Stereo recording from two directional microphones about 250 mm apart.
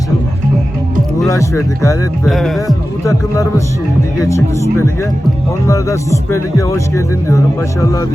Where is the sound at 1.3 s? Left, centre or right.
Centre.